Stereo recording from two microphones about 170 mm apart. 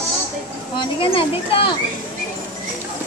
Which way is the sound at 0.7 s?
30° left (ahead or behind).